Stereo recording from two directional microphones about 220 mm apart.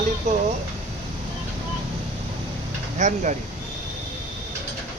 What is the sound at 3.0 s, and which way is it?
Speech, 35° right (ahead or behind).